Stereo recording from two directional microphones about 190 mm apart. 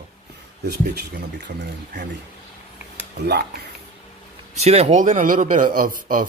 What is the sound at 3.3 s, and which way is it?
Speech, 60° right (ahead or behind).